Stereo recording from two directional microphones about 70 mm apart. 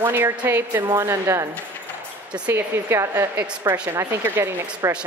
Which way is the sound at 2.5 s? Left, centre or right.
Right.